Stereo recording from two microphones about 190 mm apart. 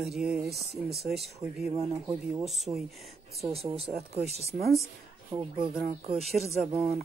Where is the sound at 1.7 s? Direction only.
15° right (ahead or behind).